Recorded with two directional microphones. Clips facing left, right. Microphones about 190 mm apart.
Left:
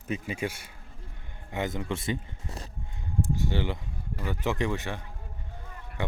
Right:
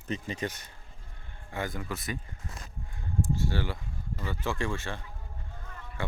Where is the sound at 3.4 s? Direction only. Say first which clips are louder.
Left 2 dB; 20° left (ahead or behind).